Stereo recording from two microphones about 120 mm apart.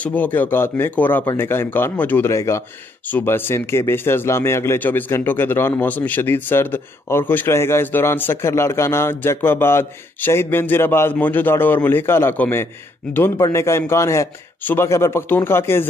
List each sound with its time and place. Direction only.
0.0 s speech: 15° left (ahead or behind)